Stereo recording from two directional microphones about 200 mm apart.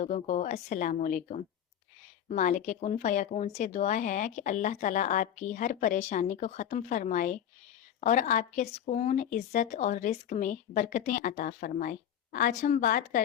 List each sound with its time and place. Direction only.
0.0 s speech: 35° left (ahead or behind)